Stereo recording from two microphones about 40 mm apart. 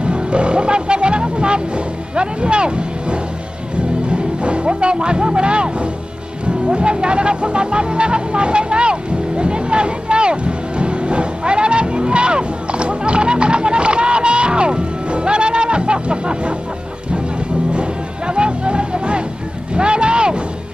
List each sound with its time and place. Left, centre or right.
0.0 s speech: right
3.8 s music: right
6.4 s speech: right
9.4 s music: right
18.3 s music: right
19.7 s vehicle: right